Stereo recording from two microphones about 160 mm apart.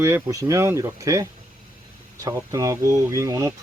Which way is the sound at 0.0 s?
20° right (ahead or behind).